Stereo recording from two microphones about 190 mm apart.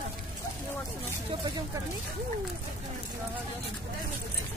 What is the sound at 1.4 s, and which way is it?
Speech, 20° right (ahead or behind).